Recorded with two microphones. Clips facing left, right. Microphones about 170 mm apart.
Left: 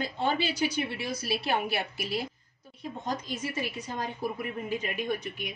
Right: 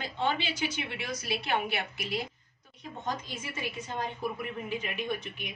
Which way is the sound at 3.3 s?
40° left (ahead or behind).